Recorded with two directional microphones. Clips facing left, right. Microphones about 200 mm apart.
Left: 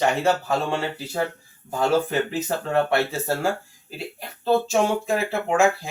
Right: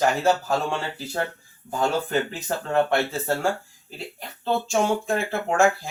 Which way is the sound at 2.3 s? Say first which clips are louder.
Left 2 dB; 5° left (ahead or behind).